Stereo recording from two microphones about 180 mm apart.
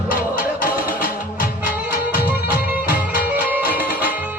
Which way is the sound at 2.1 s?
55° left (ahead or behind).